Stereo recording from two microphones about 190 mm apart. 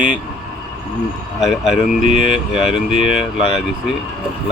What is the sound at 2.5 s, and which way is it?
Speech, 5° right (ahead or behind).